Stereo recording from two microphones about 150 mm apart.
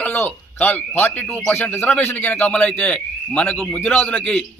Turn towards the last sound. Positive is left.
turn(degrees=10)  # may be behind; listen again after turning